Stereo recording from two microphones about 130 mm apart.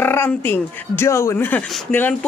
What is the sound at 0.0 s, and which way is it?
Speech, 15° left (ahead or behind).